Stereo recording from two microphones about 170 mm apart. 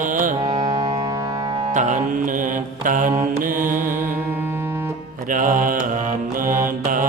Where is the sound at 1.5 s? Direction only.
35° right (ahead or behind); by 3.8 s 50° right (ahead or behind).